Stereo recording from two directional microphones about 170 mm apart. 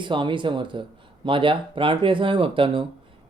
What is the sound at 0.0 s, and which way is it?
Speech, 30° right (ahead or behind).